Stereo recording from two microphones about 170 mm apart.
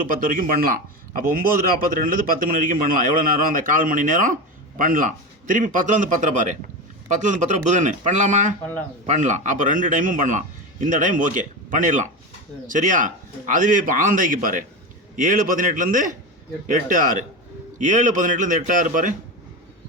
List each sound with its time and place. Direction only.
0.1 s a man's voice: 55° right (ahead or behind)